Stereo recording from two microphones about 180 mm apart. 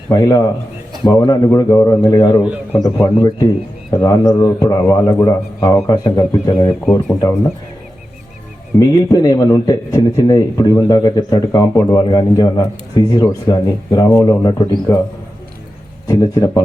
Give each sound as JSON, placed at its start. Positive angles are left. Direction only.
{"t": 0.1, "sound": "a man's voice", "side_deg": 20}
{"t": 2.4, "sound": "a man's voice", "side_deg": -5}
{"t": 2.8, "sound": "a man's voice", "side_deg": 20}
{"t": 8.9, "sound": "a man's voice", "side_deg": 20}
{"t": 16.0, "sound": "a man's voice", "side_deg": 20}